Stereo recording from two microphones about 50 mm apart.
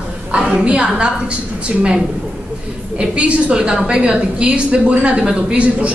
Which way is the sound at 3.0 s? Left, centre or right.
Right.